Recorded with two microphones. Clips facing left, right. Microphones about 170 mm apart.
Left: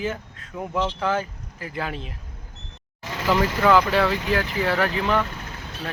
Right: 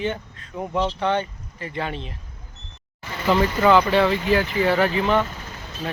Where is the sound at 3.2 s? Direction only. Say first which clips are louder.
Right 2 dB; centre (ahead or behind).